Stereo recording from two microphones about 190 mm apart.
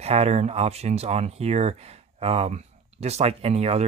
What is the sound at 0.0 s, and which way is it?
Speech, 35° right (ahead or behind).